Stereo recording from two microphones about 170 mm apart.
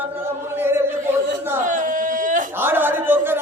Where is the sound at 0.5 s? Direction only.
15° right (ahead or behind).